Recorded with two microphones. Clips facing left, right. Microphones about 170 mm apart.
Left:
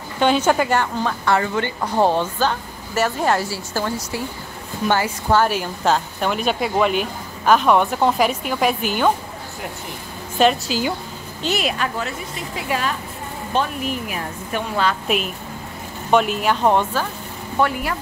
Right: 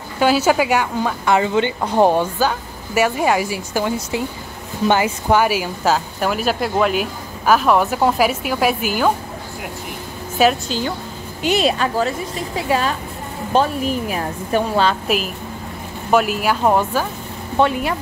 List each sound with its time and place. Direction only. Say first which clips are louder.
0.2 s a woman's voice: right 2 dB; 5° right (ahead or behind)
10.3 s a woman's voice: right 1 dB; 5° right (ahead or behind)
11.6 s a woman's voice: right 6 dB; 30° right (ahead or behind)
13.5 s a woman's voice: right 5 dB; 35° right (ahead or behind)
15.0 s a woman's voice: right 2 dB; centre (ahead or behind)
17.6 s speech: right 3 dB; 20° right (ahead or behind)